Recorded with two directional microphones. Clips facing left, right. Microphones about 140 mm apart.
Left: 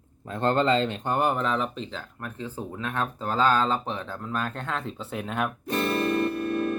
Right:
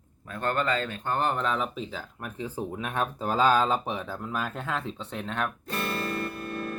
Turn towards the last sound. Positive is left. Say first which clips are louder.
# left 8 dB
turn(degrees=20)  # may be behind; listen again after turning